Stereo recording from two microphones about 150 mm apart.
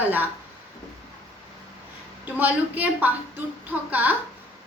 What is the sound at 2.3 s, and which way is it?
A woman's voice, 10° right (ahead or behind).